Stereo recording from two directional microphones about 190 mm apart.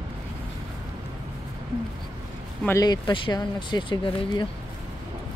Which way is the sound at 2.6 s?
20° left (ahead or behind).